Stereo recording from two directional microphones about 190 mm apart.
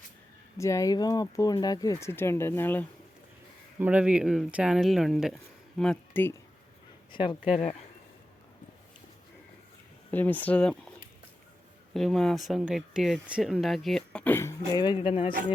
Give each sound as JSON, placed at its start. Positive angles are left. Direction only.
{"t": 0.5, "sound": "speech", "side_deg": 15}
{"t": 3.8, "sound": "speech", "side_deg": -5}
{"t": 7.1, "sound": "speech", "side_deg": 25}
{"t": 10.1, "sound": "speech", "side_deg": 10}
{"t": 11.9, "sound": "speech", "side_deg": 0}